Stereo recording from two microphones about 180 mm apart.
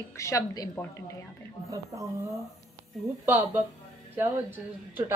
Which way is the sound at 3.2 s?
10° right (ahead or behind).